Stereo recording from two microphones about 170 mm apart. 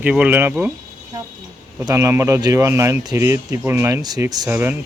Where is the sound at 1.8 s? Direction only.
15° right (ahead or behind).